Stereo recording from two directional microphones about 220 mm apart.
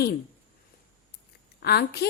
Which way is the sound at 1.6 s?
45° left (ahead or behind).